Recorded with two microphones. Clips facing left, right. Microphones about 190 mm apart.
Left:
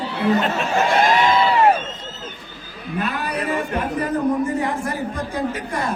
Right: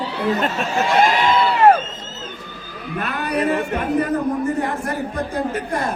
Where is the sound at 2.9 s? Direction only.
60° right (ahead or behind).